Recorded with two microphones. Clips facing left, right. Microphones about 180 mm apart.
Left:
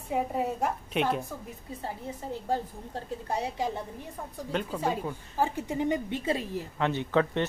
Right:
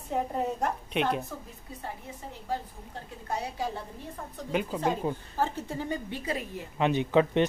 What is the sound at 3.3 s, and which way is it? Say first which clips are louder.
Speech: left 1 dB; 25° left (ahead or behind).